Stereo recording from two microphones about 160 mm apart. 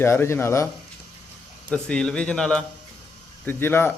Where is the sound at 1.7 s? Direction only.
5° left (ahead or behind).